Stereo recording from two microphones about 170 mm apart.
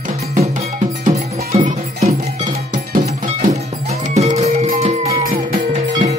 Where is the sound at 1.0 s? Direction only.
45° right (ahead or behind).